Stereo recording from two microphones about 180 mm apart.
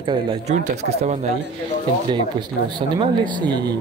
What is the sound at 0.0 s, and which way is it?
Speech, 30° right (ahead or behind).